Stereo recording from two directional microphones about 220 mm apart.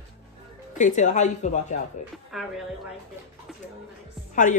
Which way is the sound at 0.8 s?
35° left (ahead or behind).